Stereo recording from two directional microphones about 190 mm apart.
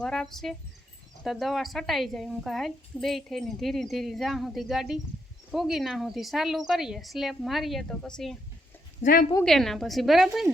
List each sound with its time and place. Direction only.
0.0 s a woman's voice: 5° left (ahead or behind)
9.0 s speech: 45° left (ahead or behind)
9.4 s a woman's voice: centre (ahead or behind)